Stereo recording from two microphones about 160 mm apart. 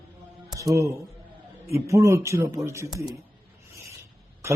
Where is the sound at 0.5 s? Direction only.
20° right (ahead or behind).